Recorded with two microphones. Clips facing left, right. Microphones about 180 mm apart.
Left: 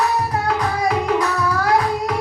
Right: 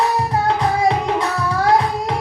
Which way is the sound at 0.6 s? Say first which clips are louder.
Right 3 dB; 30° right (ahead or behind).